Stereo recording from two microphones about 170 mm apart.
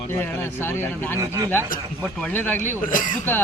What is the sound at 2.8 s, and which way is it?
Speech, 50° left (ahead or behind).